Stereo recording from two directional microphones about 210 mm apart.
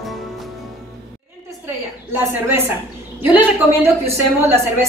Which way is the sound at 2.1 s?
10° right (ahead or behind).